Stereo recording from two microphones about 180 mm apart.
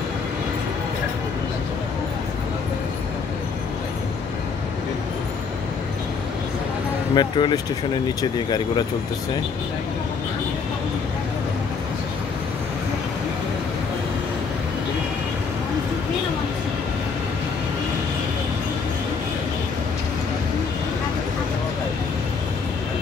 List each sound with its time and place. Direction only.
7.2 s speech: 25° left (ahead or behind)